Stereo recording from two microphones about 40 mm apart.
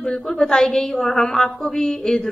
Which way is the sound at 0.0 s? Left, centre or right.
Centre.